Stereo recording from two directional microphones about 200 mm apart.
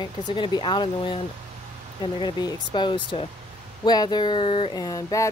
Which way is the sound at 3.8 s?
20° left (ahead or behind).